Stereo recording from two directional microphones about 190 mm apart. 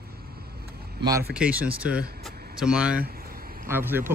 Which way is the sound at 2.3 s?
55° right (ahead or behind).